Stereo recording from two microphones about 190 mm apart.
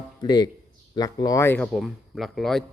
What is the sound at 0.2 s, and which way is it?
Speech, 20° left (ahead or behind).